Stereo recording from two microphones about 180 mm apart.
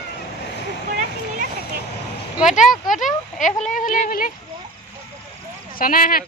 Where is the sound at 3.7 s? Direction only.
50° left (ahead or behind).